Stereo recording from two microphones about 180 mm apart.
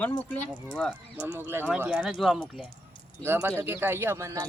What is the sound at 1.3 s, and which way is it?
Speech, 10° right (ahead or behind).